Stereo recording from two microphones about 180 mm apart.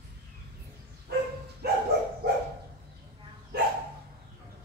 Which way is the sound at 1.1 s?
65° right (ahead or behind).